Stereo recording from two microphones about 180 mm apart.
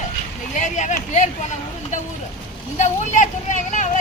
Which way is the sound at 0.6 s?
40° left (ahead or behind).